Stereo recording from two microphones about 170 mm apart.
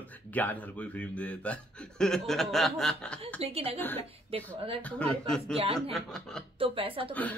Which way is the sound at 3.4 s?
35° right (ahead or behind).